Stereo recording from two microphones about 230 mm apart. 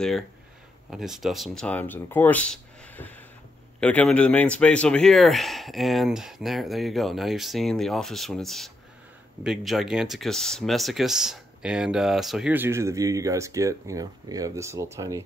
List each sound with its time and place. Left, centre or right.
0.8 s speech: centre